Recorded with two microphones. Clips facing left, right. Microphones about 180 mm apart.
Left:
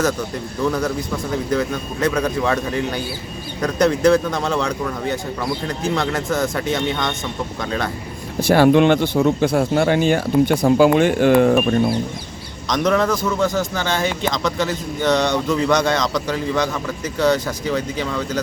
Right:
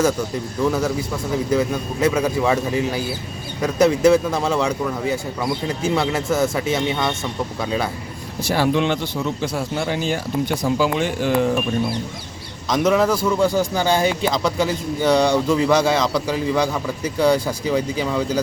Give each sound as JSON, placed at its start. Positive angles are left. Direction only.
{"t": 0.6, "sound": "a man's voice", "side_deg": -5}
{"t": 8.4, "sound": "speech", "side_deg": 60}
{"t": 12.6, "sound": "a man's voice", "side_deg": -5}